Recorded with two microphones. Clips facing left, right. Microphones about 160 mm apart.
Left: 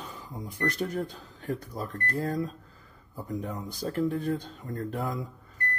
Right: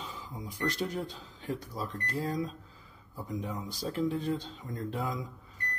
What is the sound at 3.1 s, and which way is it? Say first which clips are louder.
Speech: left 2 dB; 60° left (ahead or behind).